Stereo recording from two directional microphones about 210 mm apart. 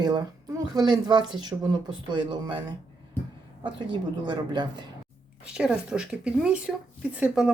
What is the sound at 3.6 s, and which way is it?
Speech, 20° right (ahead or behind).